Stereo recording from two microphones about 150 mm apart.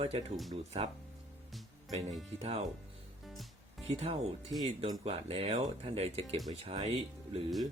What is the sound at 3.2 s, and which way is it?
Music, centre (ahead or behind).